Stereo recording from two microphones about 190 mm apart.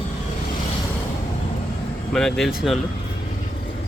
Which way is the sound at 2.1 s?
Centre (ahead or behind).